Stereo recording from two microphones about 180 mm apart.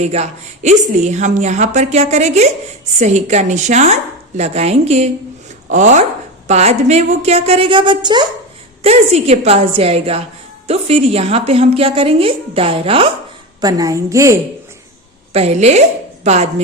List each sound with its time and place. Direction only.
0.0 s a woman's voice: 40° right (ahead or behind)
8.8 s a woman's voice: 35° right (ahead or behind)
13.6 s a woman's voice: 20° right (ahead or behind)
15.3 s a woman's voice: 35° right (ahead or behind)